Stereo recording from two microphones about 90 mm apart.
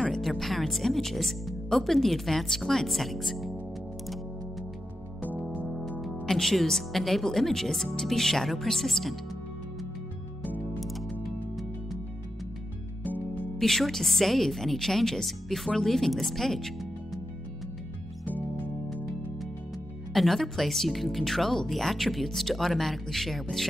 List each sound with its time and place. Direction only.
0.0 s a woman's voice: 5° left (ahead or behind)
6.2 s a woman's voice: 5° left (ahead or behind)
11.2 s music: centre (ahead or behind)
13.0 s music: 20° left (ahead or behind)
13.6 s a woman's voice: 5° left (ahead or behind)
18.2 s music: 20° left (ahead or behind)
20.1 s a woman's voice: centre (ahead or behind)